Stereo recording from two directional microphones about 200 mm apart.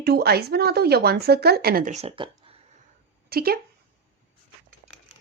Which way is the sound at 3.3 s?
50° right (ahead or behind).